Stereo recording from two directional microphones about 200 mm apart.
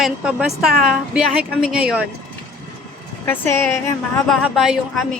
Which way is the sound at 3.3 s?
10° left (ahead or behind).